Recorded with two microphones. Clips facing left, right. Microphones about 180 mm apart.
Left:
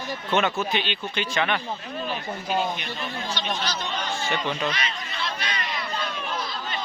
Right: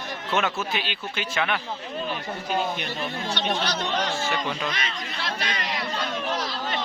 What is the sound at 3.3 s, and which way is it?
Speech, 60° right (ahead or behind).